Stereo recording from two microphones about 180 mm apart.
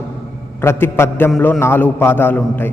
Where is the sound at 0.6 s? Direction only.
15° left (ahead or behind).